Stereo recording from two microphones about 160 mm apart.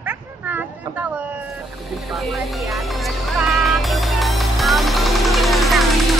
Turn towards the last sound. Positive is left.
turn(degrees=0)  # may be behind; listen again after turning